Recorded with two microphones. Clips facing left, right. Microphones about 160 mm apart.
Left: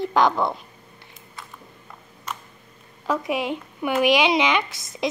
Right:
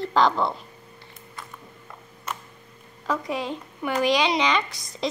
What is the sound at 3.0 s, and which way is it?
Speech, 15° left (ahead or behind).